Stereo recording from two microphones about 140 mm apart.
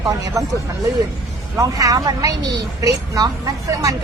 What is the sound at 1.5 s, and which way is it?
Speech, 25° right (ahead or behind).